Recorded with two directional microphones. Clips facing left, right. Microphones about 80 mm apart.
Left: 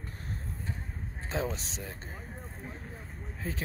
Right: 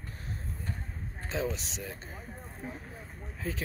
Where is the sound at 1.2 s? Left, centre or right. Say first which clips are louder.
Even; left.